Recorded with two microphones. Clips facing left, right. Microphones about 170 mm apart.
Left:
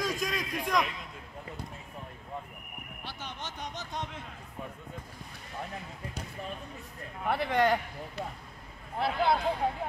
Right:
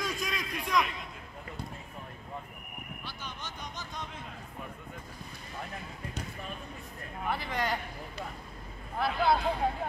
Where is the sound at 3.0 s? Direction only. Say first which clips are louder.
Left 4 dB; 75° left (ahead or behind).